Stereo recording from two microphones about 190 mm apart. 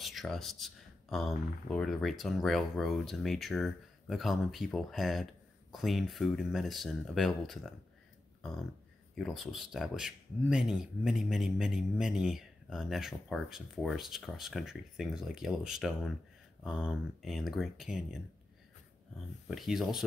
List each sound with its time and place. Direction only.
0.0 s speech: centre (ahead or behind)
9.1 s speech: centre (ahead or behind)
19.4 s speech: centre (ahead or behind)